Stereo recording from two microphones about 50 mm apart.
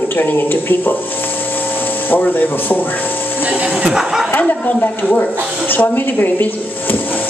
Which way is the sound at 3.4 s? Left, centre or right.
Right.